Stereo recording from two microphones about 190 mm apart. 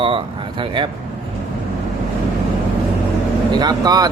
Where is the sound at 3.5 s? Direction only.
20° right (ahead or behind).